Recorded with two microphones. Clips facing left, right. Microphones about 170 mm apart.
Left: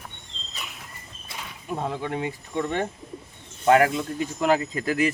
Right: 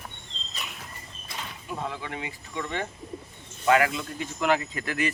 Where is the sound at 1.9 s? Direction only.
45° left (ahead or behind).